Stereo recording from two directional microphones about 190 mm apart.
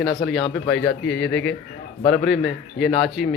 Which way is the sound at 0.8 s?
5° left (ahead or behind).